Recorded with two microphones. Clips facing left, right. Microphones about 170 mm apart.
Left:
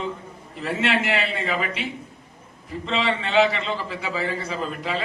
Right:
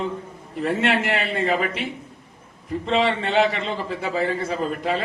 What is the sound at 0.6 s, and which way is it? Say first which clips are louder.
A man's voice: right 2 dB; 50° right (ahead or behind).